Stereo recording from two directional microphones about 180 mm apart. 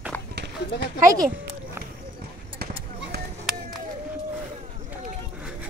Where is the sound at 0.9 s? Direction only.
20° right (ahead or behind).